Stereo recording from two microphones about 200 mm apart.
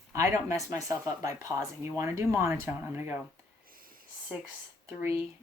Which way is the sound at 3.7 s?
45° right (ahead or behind).